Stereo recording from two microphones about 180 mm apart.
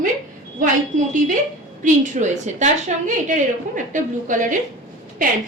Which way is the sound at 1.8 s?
40° right (ahead or behind).